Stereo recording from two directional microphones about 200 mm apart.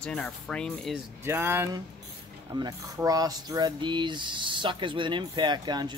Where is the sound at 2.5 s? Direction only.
20° right (ahead or behind).